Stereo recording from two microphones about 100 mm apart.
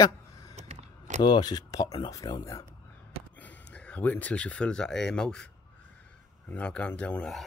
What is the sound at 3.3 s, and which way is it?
Speech, 15° left (ahead or behind).